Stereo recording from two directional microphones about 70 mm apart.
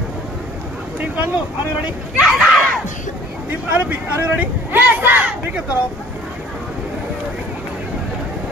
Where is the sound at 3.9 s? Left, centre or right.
Right.